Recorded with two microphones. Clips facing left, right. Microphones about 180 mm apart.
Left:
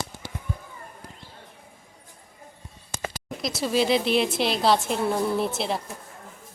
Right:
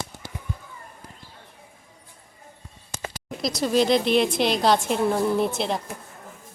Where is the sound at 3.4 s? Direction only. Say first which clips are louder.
Right 3 dB; 5° left (ahead or behind).